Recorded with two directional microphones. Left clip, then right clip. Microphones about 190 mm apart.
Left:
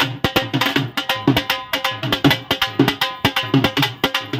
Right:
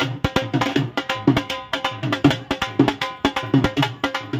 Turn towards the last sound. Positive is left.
turn(degrees=20)  # may be behind; listen again after turning